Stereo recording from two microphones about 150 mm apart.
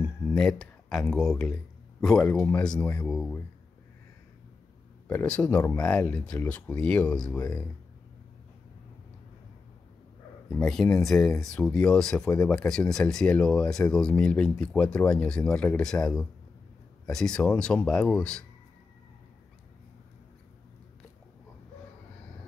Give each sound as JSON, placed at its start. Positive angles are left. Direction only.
{"t": 0.3, "sound": "a sound", "side_deg": 5}
{"t": 1.1, "sound": "speech", "side_deg": 5}
{"t": 3.1, "sound": "speech", "side_deg": 5}
{"t": 5.0, "sound": "speech", "side_deg": 10}
{"t": 10.5, "sound": "speech", "side_deg": 5}